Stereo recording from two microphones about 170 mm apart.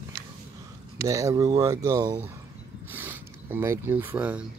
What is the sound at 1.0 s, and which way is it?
Speech, 20° right (ahead or behind).